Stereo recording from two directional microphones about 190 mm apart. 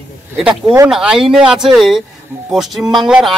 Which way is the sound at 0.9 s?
5° right (ahead or behind).